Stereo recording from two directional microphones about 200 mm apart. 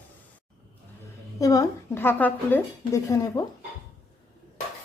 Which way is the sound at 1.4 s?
15° left (ahead or behind).